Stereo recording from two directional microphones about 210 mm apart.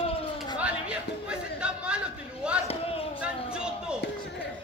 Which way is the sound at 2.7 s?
30° left (ahead or behind).